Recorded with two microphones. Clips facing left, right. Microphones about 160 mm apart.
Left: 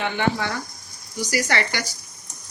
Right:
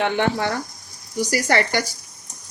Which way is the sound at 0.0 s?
70° right (ahead or behind).